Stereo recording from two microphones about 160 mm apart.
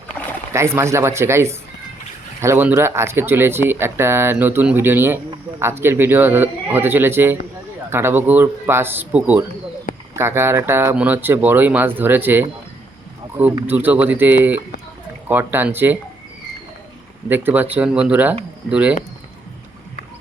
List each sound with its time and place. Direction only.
0.5 s speech: 15° right (ahead or behind)
13.7 s speech: 10° right (ahead or behind)
17.2 s speech: 10° right (ahead or behind)